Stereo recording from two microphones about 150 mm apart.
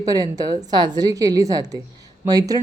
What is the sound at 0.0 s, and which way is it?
A woman's voice, 25° right (ahead or behind).